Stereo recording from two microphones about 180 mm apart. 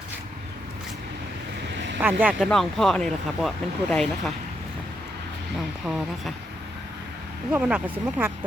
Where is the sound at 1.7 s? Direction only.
80° right.